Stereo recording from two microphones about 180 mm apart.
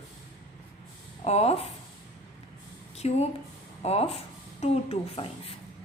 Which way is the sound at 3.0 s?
35° left (ahead or behind).